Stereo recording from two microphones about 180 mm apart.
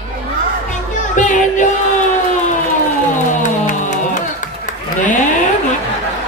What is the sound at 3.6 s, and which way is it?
Music, 45° left (ahead or behind).